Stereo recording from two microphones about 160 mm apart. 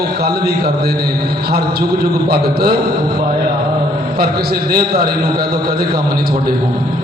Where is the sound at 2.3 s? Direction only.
75° right (ahead or behind).